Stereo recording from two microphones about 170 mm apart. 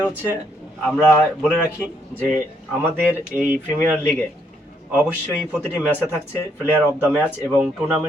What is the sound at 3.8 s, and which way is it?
Speech, 5° left (ahead or behind).